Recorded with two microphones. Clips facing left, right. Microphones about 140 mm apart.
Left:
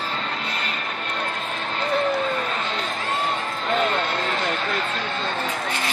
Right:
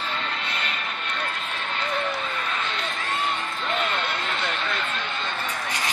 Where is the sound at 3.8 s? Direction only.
40° left (ahead or behind).